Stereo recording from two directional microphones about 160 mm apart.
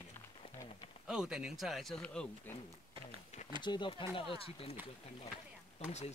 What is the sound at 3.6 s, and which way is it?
Speech, 30° left (ahead or behind).